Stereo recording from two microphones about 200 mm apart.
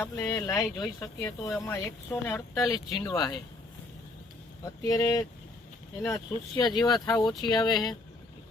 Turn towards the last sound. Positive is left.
turn(degrees=20)  # may be behind; listen again after turning